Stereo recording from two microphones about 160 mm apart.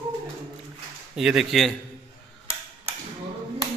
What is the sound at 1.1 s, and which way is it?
Speech, centre (ahead or behind).